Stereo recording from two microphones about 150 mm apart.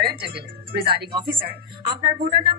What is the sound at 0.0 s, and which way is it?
A woman's voice, 90° right.